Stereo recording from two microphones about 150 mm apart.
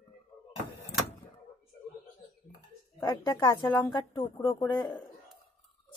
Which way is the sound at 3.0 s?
30° left (ahead or behind).